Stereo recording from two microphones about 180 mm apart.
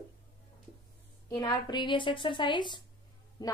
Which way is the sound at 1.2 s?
20° left (ahead or behind).